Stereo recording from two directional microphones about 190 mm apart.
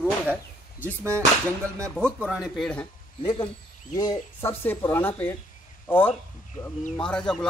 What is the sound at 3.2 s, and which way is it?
Speech, 25° left (ahead or behind).